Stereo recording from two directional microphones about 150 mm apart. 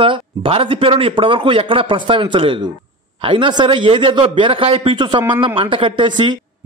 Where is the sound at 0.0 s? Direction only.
35° right (ahead or behind).